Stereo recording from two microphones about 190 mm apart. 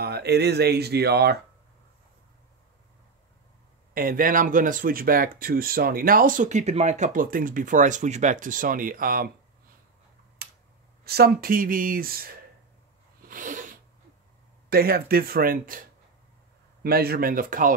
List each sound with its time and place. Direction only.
0.0 s speech: 60° right (ahead or behind)
3.9 s speech: 50° right (ahead or behind)
10.4 s a sound: 50° right (ahead or behind)
11.1 s speech: 55° right (ahead or behind)
13.3 s sneeze: 45° right (ahead or behind)
14.7 s speech: 55° right (ahead or behind)
16.8 s speech: 55° right (ahead or behind)